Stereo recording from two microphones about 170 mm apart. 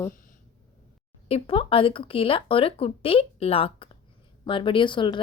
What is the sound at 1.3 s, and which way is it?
A woman's voice, 35° left (ahead or behind).